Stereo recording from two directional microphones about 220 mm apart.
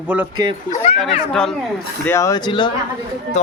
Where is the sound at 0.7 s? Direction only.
30° left (ahead or behind).